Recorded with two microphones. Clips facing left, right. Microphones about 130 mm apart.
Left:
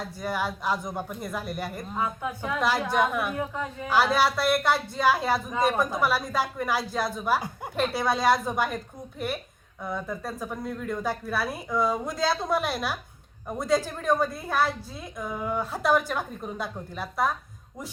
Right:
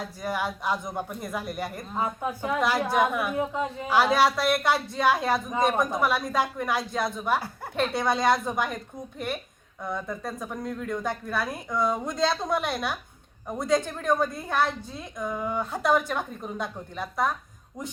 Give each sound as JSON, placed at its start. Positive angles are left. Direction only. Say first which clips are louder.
{"t": 0.0, "sound": "a woman's voice", "louder": "even", "side_deg": 0}
{"t": 3.3, "sound": "a woman's voice", "louder": "right 3 dB", "side_deg": -20}
{"t": 3.8, "sound": "a woman's voice", "louder": "right 1 dB", "side_deg": 0}